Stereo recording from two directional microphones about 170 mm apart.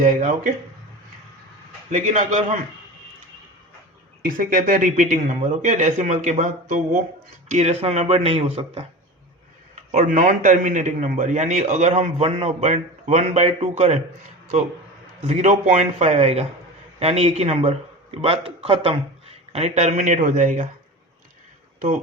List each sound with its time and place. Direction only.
0.0 s a man's voice: 50° right (ahead or behind)
1.9 s a man's voice: 45° right (ahead or behind)
4.3 s a man's voice: 55° right (ahead or behind); by 8.4 s 35° right (ahead or behind)
9.9 s a man's voice: 45° right (ahead or behind)
15.3 s a man's voice: 45° right (ahead or behind)